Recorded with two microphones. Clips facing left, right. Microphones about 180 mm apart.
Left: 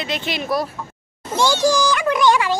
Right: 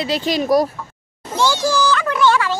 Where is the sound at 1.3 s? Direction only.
15° left (ahead or behind).